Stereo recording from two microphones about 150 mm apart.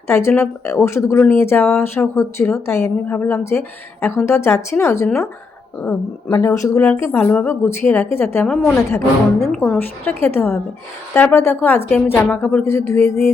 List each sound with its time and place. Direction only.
0.1 s speech: 20° left (ahead or behind)
8.4 s a woman's voice: centre (ahead or behind)
9.6 s speech: 15° left (ahead or behind)
12.4 s a woman's voice: 5° left (ahead or behind)
12.6 s speech: 20° left (ahead or behind)